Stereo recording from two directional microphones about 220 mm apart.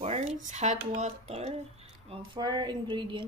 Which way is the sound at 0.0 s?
30° right (ahead or behind).